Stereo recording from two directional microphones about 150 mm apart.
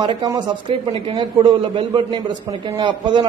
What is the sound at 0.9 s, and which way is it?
A man's voice, 40° right (ahead or behind).